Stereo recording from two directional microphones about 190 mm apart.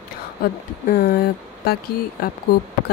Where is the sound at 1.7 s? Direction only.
55° left (ahead or behind).